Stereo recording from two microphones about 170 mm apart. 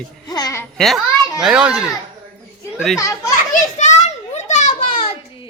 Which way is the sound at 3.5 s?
45° left (ahead or behind).